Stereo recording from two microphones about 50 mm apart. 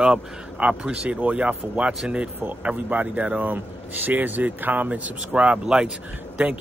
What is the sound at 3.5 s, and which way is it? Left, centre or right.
Speech, right.